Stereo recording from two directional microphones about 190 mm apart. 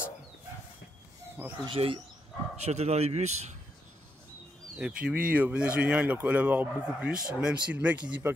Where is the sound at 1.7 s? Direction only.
30° right (ahead or behind).